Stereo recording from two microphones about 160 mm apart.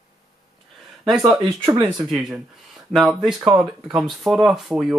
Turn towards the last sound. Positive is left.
turn(degrees=-5)  # may be behind; listen again after turning